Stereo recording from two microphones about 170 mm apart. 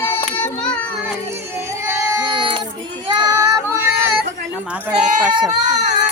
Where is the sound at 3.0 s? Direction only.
25° right (ahead or behind).